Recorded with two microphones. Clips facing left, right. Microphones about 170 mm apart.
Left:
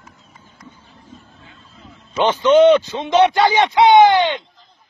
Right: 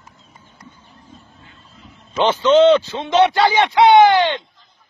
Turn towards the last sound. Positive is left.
turn(degrees=20)  # may be behind; listen again after turning